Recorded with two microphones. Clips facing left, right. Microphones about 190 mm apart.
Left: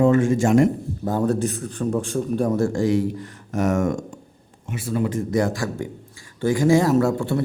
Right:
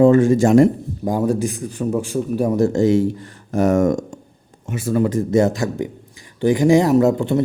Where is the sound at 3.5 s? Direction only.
35° right (ahead or behind).